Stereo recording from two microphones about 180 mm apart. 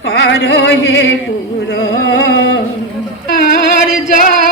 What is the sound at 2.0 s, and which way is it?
Carnatic music, 90° left.